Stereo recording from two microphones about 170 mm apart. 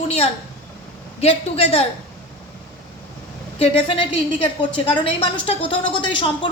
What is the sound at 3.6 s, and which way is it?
A woman's voice, 35° left (ahead or behind).